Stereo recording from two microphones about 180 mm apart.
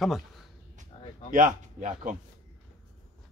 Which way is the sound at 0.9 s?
35° left (ahead or behind).